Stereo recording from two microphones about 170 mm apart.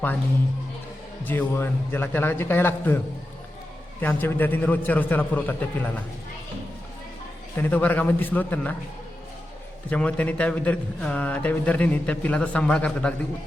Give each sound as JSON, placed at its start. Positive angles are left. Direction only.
{"t": 1.2, "sound": "a man's voice", "side_deg": 10}
{"t": 4.0, "sound": "a man's voice", "side_deg": 10}
{"t": 7.5, "sound": "a man's voice", "side_deg": 10}
{"t": 9.9, "sound": "a man's voice", "side_deg": 10}